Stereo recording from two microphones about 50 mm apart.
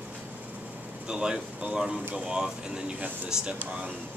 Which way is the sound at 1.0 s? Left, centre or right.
Centre.